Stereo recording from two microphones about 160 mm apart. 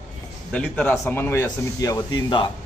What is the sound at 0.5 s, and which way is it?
Speech, 10° left (ahead or behind).